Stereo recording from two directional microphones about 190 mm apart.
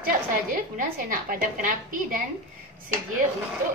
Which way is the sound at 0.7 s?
45° right (ahead or behind).